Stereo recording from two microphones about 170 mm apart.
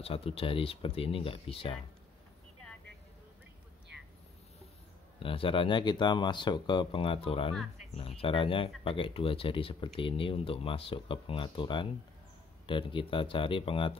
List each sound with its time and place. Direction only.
0.0 s speech: 35° left (ahead or behind)
3.9 s vehicle: 5° right (ahead or behind)
5.2 s speech: 30° left (ahead or behind)